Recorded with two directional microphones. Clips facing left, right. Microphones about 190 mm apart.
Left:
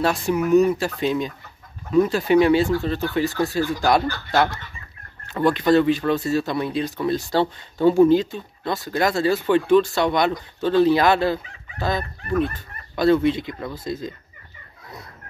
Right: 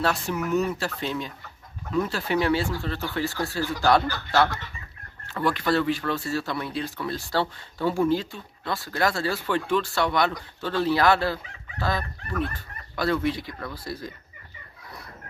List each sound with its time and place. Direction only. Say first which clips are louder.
0.0 s speech: left 5 dB; 15° left (ahead or behind)